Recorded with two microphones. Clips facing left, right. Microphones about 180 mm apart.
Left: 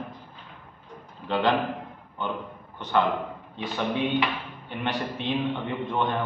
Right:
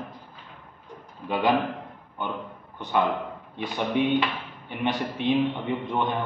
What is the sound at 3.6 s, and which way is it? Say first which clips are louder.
A man's voice: right 2 dB; 10° right (ahead or behind).